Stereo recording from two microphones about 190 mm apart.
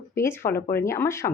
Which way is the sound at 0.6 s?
50° left (ahead or behind).